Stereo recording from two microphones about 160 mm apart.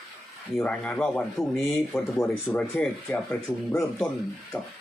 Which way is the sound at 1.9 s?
15° left (ahead or behind).